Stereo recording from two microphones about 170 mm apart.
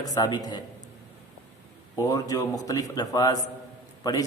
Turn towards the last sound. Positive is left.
turn(degrees=20)  # may be behind; listen again after turning